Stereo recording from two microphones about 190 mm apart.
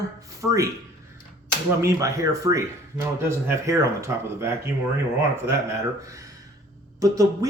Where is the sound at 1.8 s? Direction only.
15° right (ahead or behind).